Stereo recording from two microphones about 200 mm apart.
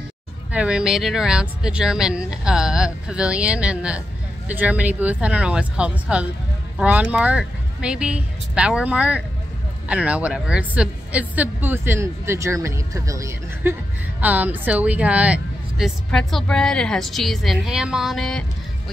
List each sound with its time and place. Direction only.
0.5 s a woman's voice: 5° right (ahead or behind)